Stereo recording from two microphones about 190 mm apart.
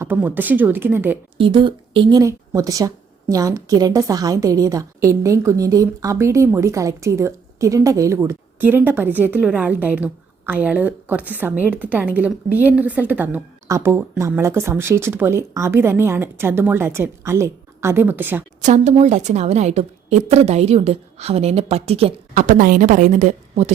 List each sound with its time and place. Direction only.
0.0 s speech: 10° right (ahead or behind)
1.4 s speech: 25° right (ahead or behind); by 18.4 s 10° right (ahead or behind)
18.6 s a woman's voice: 40° right (ahead or behind)
22.4 s a woman's voice: 45° right (ahead or behind)